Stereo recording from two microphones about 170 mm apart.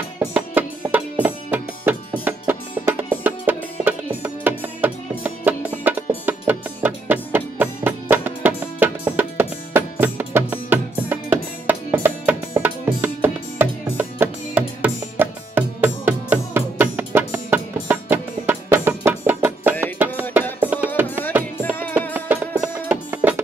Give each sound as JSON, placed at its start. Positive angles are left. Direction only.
{"t": 0.2, "sound": "music", "side_deg": -10}
{"t": 21.5, "sound": "music", "side_deg": 15}
{"t": 22.8, "sound": "music", "side_deg": -10}